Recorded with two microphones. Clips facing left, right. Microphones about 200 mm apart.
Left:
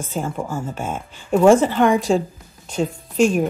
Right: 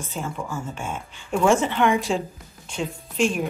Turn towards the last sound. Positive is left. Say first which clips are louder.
# left 6 dB
turn(degrees=45)  # may be behind; listen again after turning